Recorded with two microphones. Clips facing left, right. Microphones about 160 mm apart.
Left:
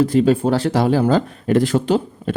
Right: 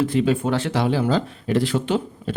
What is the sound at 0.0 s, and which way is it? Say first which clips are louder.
Speech: left 5 dB; 40° left (ahead or behind).